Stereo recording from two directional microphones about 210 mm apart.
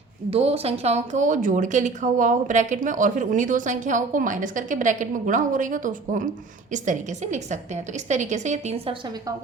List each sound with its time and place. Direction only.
0.3 s a woman's voice: 30° right (ahead or behind)